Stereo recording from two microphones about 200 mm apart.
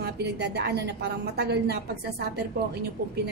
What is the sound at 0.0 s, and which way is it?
A woman's voice, 55° right (ahead or behind).